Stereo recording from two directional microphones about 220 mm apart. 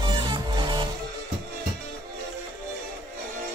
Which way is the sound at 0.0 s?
20° right (ahead or behind).